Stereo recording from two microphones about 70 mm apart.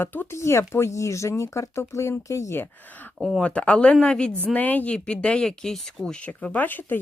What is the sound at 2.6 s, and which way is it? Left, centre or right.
Speech, left.